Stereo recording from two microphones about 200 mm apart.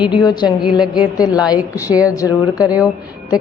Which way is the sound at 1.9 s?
5° right (ahead or behind).